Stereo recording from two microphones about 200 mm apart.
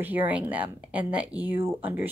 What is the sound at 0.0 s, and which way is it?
Speech, 10° right (ahead or behind).